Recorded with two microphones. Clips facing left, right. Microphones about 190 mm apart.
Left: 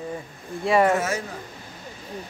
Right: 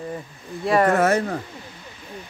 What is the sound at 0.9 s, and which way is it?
Speech, 60° right (ahead or behind).